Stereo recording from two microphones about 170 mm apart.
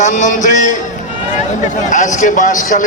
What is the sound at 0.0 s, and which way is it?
Speech, 45° left (ahead or behind).